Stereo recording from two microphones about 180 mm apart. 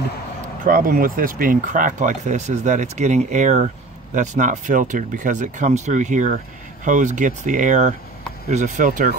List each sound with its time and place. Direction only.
0.7 s speech: 50° right (ahead or behind)